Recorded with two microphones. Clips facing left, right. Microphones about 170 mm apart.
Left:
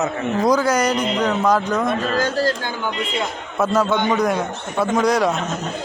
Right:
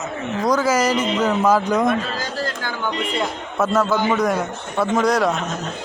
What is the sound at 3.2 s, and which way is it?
A man's voice, centre (ahead or behind).